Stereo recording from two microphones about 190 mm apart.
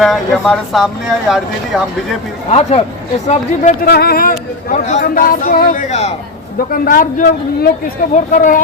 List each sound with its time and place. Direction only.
0.0 s speech: centre (ahead or behind)
2.5 s speech: 35° left (ahead or behind)
3.8 s speech: 55° left (ahead or behind)